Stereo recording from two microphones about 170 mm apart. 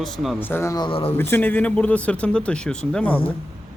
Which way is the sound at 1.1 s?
10° left (ahead or behind).